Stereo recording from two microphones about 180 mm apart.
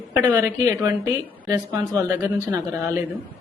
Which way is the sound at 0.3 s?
10° right (ahead or behind).